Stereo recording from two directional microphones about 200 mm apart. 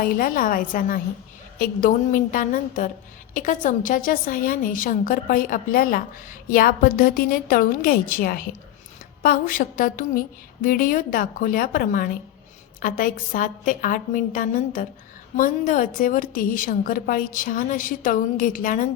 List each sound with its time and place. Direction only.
0.0 s a woman's voice: 45° left (ahead or behind)